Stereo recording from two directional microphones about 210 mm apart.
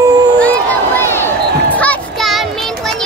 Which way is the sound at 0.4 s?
10° left (ahead or behind).